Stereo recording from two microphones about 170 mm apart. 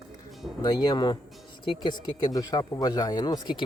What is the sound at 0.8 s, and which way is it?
Speech, 25° left (ahead or behind).